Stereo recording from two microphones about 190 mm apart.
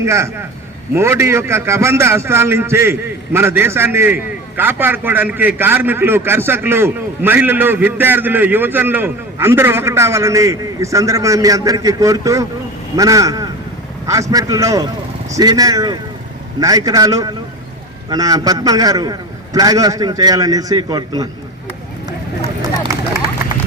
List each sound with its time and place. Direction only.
0.0 s a man's voice: 15° right (ahead or behind)